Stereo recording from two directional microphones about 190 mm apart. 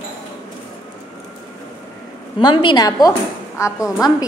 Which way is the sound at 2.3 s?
25° left (ahead or behind).